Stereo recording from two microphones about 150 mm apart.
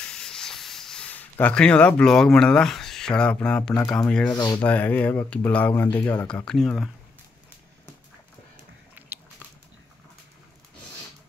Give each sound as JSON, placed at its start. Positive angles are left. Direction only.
{"t": 0.0, "sound": "speech", "side_deg": 5}
{"t": 4.3, "sound": "speech", "side_deg": 30}
{"t": 4.6, "sound": "speech", "side_deg": 10}